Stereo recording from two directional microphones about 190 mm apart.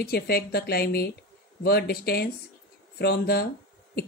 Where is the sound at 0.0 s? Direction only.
55° left (ahead or behind).